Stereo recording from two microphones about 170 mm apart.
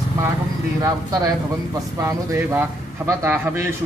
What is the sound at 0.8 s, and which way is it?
A man's voice, 20° right (ahead or behind).